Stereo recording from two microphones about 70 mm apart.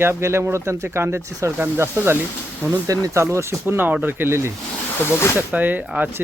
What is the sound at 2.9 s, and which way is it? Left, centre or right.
Speech, right.